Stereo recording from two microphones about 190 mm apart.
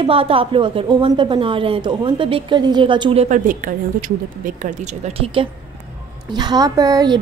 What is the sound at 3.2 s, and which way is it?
A woman's voice, 40° right (ahead or behind).